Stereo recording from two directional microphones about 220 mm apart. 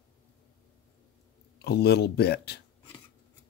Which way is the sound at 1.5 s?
50° left (ahead or behind).